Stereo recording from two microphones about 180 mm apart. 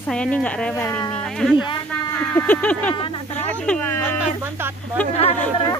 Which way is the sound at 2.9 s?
25° left (ahead or behind).